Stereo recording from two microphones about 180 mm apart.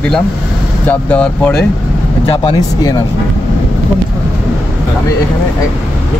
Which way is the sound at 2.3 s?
30° left (ahead or behind).